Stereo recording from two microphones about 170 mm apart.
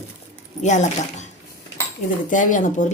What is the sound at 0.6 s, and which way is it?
A woman's voice, 45° left (ahead or behind).